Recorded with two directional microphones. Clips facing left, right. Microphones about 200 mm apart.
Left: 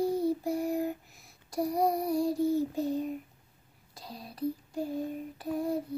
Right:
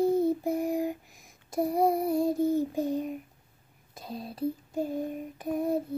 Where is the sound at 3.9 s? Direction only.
25° right (ahead or behind).